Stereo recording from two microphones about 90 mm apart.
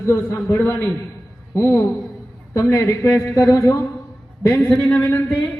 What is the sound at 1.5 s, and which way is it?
A man's voice, 30° left (ahead or behind).